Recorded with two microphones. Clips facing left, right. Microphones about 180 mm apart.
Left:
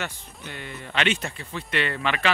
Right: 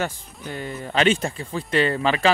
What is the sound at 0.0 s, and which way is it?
Speech, 40° right (ahead or behind).